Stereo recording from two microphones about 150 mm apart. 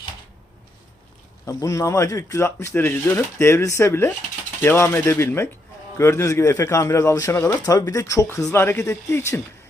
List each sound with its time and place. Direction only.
1.5 s speech: 20° left (ahead or behind)